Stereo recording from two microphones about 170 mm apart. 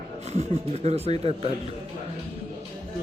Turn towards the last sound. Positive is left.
turn(degrees=-35)  # may be behind; listen again after turning